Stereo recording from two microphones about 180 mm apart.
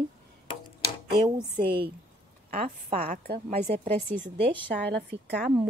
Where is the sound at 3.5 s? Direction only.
35° right (ahead or behind).